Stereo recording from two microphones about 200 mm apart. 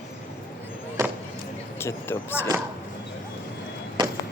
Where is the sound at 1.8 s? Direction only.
10° left (ahead or behind).